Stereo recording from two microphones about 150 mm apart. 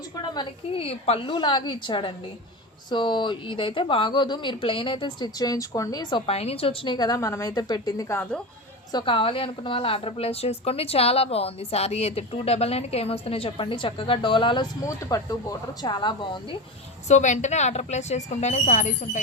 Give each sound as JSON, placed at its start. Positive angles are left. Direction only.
{"t": 0.3, "sound": "a woman's voice", "side_deg": 40}
{"t": 8.9, "sound": "a woman's voice", "side_deg": 30}
{"t": 17.1, "sound": "a woman's voice", "side_deg": 50}